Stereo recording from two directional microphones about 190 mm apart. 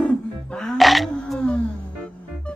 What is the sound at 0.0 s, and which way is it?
Music, 5° left (ahead or behind).